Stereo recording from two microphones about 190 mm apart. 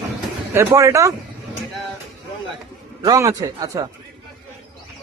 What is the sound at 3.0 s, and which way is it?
Speech, 15° right (ahead or behind).